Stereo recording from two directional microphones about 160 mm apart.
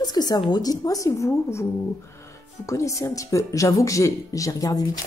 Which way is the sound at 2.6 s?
20° left (ahead or behind).